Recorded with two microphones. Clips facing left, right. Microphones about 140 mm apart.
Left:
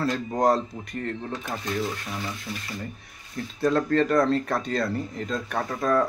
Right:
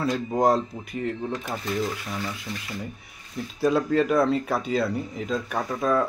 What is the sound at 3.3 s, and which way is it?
Speech, 5° right (ahead or behind).